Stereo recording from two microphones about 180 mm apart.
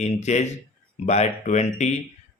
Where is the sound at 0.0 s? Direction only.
40° left (ahead or behind).